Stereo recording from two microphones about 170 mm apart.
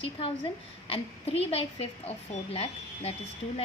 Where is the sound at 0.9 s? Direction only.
35° left (ahead or behind).